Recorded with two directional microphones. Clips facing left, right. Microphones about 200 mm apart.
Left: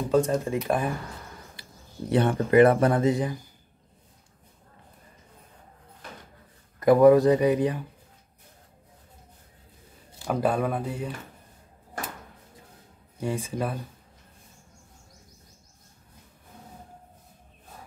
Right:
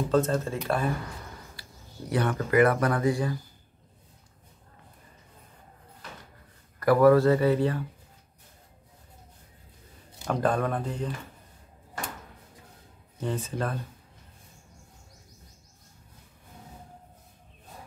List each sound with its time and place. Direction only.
0.1 s speech: 15° left (ahead or behind)
6.8 s speech: 20° left (ahead or behind)
10.2 s speech: 10° left (ahead or behind)
13.2 s speech: 10° left (ahead or behind)